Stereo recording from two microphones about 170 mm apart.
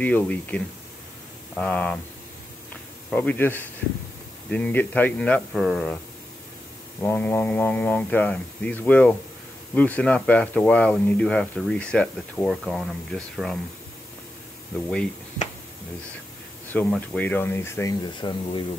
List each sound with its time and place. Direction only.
0.0 s speech: 10° left (ahead or behind)
3.1 s speech: 10° left (ahead or behind)
7.0 s speech: 10° left (ahead or behind)
16.7 s speech: 5° left (ahead or behind); by 18.6 s 25° left (ahead or behind)